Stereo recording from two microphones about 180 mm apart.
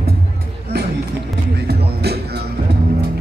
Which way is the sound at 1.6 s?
65° right (ahead or behind).